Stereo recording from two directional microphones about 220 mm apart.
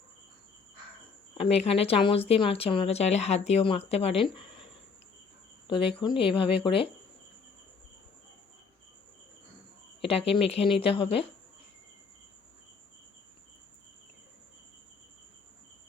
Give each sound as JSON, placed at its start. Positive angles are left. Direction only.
{"t": 1.4, "sound": "speech", "side_deg": 25}
{"t": 5.6, "sound": "speech", "side_deg": 20}
{"t": 10.0, "sound": "speech", "side_deg": 25}